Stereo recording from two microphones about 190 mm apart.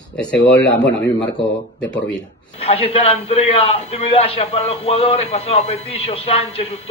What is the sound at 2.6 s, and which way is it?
A man's voice, 30° left (ahead or behind).